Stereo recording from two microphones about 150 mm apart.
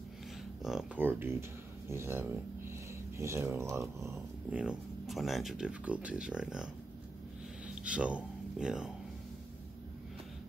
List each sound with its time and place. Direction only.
0.6 s speech: 5° right (ahead or behind)